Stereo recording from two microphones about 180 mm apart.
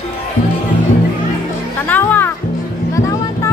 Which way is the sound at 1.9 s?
10° left (ahead or behind).